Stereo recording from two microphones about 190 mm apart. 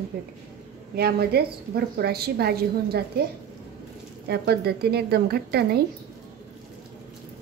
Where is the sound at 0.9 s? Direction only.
55° right (ahead or behind).